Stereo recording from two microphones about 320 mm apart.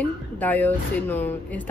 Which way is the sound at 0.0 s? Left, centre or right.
Centre.